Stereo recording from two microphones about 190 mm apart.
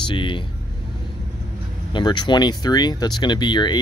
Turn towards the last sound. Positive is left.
turn(degrees=25)  # may be behind; listen again after turning